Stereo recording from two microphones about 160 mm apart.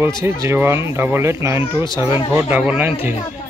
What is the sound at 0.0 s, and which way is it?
Speech, 15° right (ahead or behind).